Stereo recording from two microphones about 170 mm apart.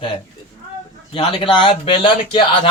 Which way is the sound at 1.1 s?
30° left (ahead or behind).